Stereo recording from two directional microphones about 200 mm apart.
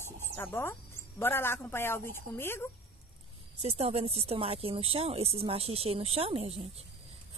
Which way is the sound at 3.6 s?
30° right (ahead or behind).